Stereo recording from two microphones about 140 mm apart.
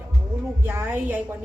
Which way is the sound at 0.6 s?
15° right (ahead or behind).